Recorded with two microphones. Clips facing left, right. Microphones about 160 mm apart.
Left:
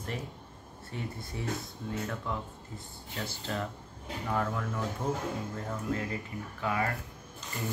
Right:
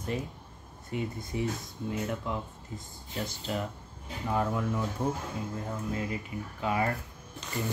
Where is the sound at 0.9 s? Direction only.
15° right (ahead or behind).